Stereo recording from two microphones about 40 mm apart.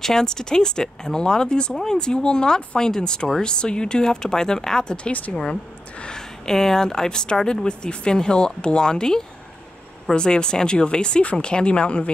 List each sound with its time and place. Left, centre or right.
0.0 s speech: centre
6.0 s speech: centre